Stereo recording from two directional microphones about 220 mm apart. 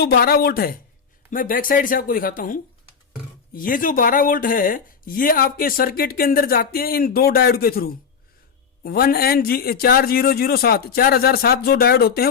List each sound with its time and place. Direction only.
0.0 s a man's voice: 45° left (ahead or behind)